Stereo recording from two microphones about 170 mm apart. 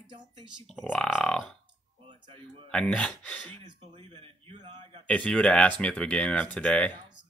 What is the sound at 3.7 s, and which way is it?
Speech, 35° right (ahead or behind).